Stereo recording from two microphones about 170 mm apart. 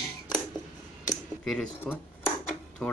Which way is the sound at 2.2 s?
10° left (ahead or behind).